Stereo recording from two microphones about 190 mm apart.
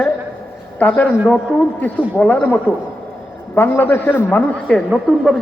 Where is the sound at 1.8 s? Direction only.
10° left (ahead or behind).